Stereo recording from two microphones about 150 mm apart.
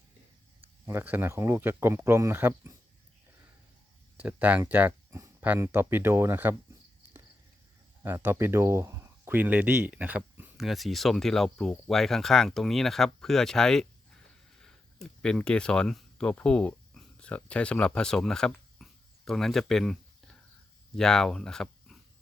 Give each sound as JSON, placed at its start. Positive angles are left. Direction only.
{"t": 0.9, "sound": "speech", "side_deg": -15}
{"t": 4.2, "sound": "speech", "side_deg": -10}
{"t": 8.0, "sound": "speech", "side_deg": -15}